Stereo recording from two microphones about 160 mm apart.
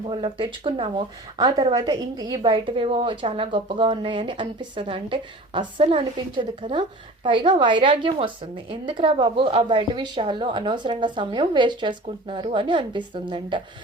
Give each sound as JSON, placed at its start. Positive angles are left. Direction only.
{"t": 0.0, "sound": "a woman's voice", "side_deg": -35}